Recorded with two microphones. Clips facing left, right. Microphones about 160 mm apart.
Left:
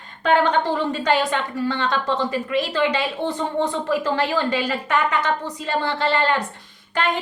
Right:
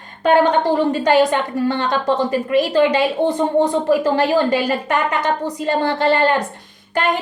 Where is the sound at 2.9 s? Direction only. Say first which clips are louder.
Right 7 dB; 15° right (ahead or behind).